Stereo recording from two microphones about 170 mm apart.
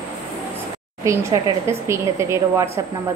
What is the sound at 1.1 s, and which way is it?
A woman's voice, 15° right (ahead or behind).